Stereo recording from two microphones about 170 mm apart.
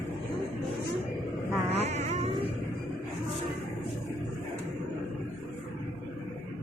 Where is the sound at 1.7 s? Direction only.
40° right (ahead or behind).